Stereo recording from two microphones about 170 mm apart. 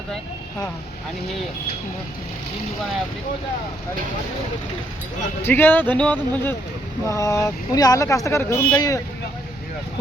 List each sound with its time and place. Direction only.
5.4 s speech: 10° left (ahead or behind)